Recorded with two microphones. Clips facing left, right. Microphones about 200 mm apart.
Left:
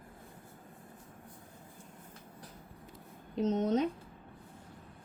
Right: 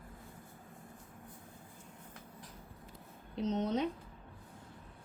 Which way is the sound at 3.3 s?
45° left (ahead or behind).